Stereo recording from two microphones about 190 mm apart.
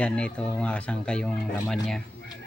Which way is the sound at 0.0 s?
5° left (ahead or behind).